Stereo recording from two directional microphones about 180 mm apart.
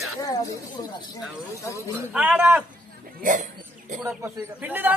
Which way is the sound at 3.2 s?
45° right (ahead or behind).